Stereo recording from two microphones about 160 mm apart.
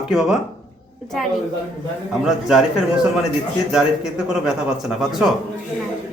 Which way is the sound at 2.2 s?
5° right (ahead or behind).